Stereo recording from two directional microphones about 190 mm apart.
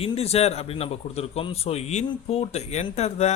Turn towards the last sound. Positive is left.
turn(degrees=35)  # may be behind; listen again after turning